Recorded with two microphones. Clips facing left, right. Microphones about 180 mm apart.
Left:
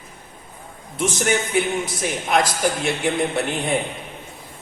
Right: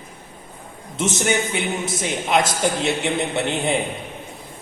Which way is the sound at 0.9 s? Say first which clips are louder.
Even; 25° right (ahead or behind).